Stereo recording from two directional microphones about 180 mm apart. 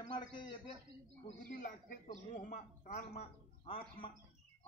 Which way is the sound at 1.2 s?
45° left (ahead or behind).